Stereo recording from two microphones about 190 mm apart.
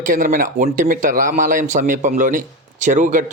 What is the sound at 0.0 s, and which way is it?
Speech, 45° right (ahead or behind).